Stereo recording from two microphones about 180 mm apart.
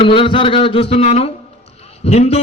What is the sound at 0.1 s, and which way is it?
A man's voice, 30° left (ahead or behind).